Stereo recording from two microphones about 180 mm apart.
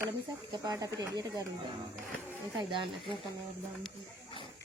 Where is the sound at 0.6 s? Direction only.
20° right (ahead or behind).